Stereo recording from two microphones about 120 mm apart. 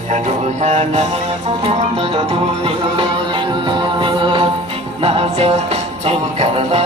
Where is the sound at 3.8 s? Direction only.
40° right (ahead or behind).